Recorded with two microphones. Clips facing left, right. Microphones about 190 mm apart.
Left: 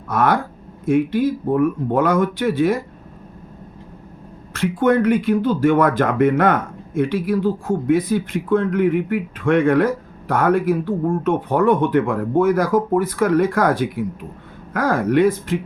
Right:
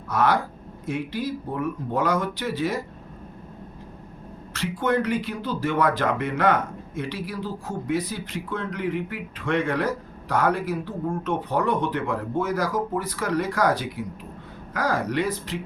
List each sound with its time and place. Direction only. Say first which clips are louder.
0.1 s speech: left 4 dB; 55° left (ahead or behind)
4.5 s speech: left 7 dB; 50° left (ahead or behind)